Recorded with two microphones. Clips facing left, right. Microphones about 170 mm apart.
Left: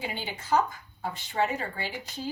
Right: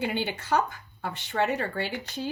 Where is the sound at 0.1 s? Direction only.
65° right (ahead or behind).